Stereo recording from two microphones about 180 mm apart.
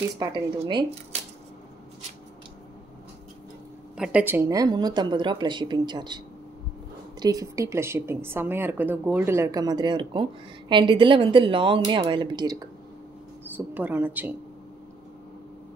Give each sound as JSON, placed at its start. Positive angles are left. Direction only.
{"t": 0.2, "sound": "a woman's voice", "side_deg": -25}
{"t": 3.9, "sound": "a woman's voice", "side_deg": -5}
{"t": 13.7, "sound": "speech", "side_deg": -10}